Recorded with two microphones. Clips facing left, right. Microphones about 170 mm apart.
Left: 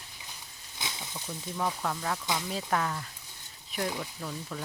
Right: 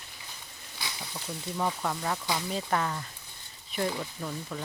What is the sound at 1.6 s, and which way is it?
Speech, 5° right (ahead or behind).